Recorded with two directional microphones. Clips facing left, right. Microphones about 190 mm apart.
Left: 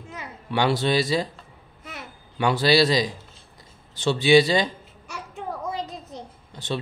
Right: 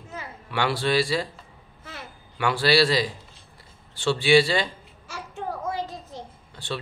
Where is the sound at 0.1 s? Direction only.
20° left (ahead or behind).